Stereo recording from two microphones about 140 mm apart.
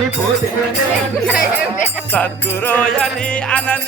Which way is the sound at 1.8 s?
15° left (ahead or behind).